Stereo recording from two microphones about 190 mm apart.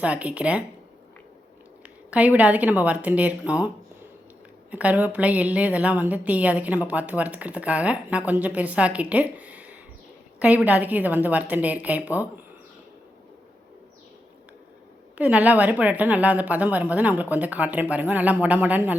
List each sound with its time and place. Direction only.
0.0 s a woman's voice: 5° right (ahead or behind)
1.8 s a woman's voice: 5° right (ahead or behind)
4.7 s a woman's voice: 10° right (ahead or behind)
15.2 s a woman's voice: 5° right (ahead or behind)